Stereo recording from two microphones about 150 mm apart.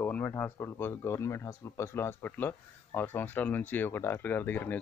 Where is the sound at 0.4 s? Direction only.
15° left (ahead or behind).